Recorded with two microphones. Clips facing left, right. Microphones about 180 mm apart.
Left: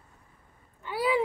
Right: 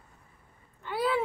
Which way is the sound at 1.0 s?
10° left (ahead or behind).